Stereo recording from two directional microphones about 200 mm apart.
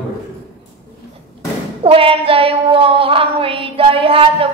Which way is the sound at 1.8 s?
25° right (ahead or behind).